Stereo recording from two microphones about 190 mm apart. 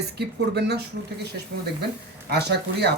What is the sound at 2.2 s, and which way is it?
Speech, 60° right (ahead or behind).